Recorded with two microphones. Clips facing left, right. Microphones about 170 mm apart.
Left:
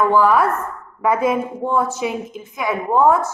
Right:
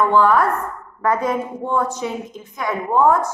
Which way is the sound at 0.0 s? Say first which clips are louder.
Even; 10° left (ahead or behind).